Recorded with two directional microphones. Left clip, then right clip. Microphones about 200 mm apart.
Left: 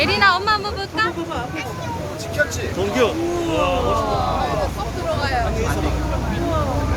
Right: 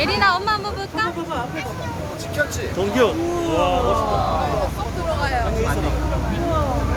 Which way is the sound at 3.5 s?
40° right (ahead or behind).